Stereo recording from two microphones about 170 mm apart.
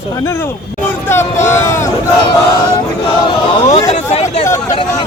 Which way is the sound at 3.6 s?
35° left (ahead or behind).